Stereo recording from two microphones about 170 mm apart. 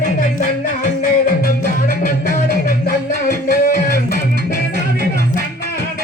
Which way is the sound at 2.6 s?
55° left (ahead or behind).